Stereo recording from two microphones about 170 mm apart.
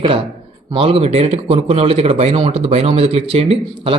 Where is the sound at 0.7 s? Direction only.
35° right (ahead or behind).